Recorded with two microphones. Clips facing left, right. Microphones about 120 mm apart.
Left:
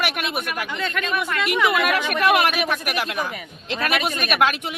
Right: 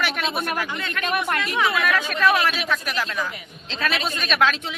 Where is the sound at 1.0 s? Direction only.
55° right (ahead or behind).